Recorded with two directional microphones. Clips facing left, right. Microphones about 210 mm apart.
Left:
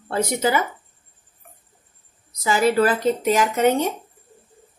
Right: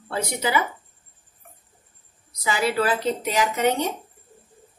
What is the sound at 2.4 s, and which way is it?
Speech, 45° left (ahead or behind).